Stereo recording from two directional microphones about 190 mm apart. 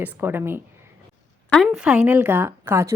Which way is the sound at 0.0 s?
10° right (ahead or behind).